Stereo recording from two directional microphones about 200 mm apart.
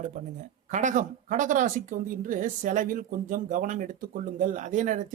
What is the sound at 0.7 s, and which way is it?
Speech, 35° right (ahead or behind).